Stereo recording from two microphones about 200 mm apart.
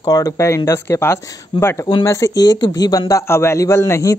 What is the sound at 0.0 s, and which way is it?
A man's voice, 15° left (ahead or behind).